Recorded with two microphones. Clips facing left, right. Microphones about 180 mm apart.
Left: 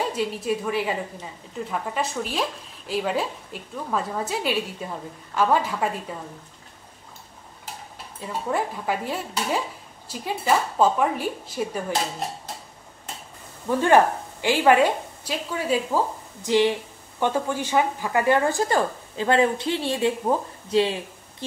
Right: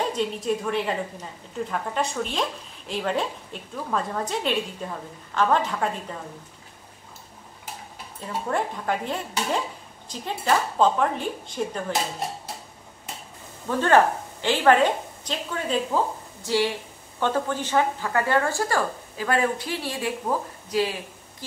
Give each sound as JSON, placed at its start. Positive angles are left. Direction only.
{"t": 0.0, "sound": "a woman's voice", "side_deg": 5}
{"t": 8.3, "sound": "a woman's voice", "side_deg": 5}
{"t": 13.7, "sound": "a woman's voice", "side_deg": 15}
{"t": 16.4, "sound": "a woman's voice", "side_deg": 20}